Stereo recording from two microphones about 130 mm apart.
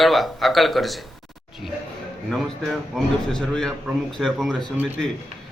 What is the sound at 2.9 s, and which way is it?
A man's voice, centre (ahead or behind).